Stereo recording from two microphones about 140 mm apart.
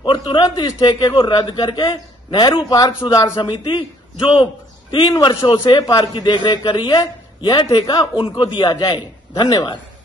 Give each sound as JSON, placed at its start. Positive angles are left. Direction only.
{"t": 0.0, "sound": "a man's voice", "side_deg": 35}
{"t": 5.1, "sound": "a man's voice", "side_deg": 25}